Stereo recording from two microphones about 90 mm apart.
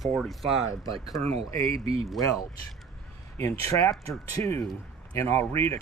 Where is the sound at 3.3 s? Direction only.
35° left (ahead or behind).